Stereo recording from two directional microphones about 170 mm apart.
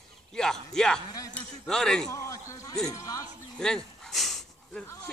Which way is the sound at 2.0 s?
20° left (ahead or behind).